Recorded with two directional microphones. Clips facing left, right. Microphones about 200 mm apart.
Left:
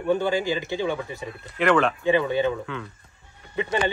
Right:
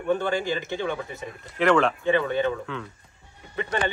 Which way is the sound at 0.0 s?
10° left (ahead or behind).